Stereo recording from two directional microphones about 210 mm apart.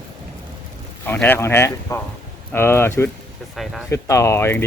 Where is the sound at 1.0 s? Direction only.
10° left (ahead or behind).